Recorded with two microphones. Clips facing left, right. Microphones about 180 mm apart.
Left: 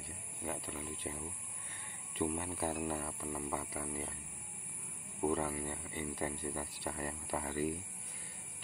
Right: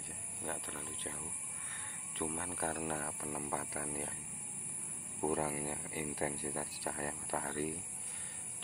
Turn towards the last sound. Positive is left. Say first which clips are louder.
# left 2 dB
turn(degrees=0)  # may be behind; listen again after turning